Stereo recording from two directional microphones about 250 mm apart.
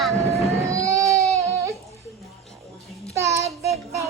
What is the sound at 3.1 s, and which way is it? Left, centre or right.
Child singing, centre.